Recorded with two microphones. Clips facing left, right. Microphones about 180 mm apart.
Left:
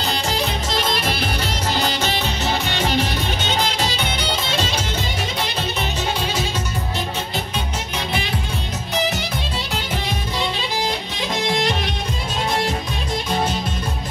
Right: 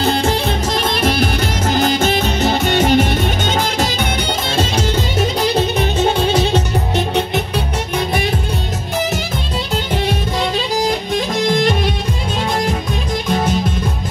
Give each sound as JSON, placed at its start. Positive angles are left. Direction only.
{"t": 0.0, "sound": "music", "side_deg": -50}
{"t": 5.8, "sound": "music", "side_deg": -60}